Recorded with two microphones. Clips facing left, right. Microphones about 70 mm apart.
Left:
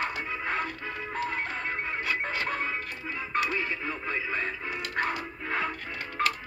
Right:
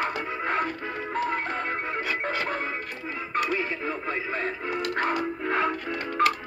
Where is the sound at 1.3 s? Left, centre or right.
Right.